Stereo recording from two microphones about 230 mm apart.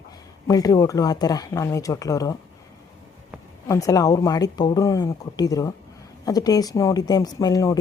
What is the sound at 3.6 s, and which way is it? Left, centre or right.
Speech, centre.